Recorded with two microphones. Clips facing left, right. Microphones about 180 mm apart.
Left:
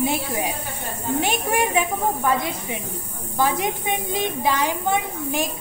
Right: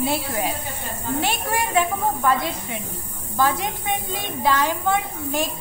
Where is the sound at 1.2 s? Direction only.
15° left (ahead or behind).